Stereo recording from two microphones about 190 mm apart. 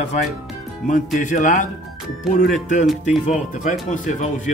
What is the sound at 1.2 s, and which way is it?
Speech, 45° left (ahead or behind).